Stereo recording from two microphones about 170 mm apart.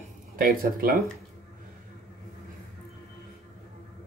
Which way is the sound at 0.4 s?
60° right (ahead or behind).